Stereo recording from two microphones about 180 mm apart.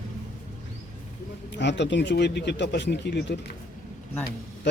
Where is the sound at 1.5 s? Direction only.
75° left (ahead or behind).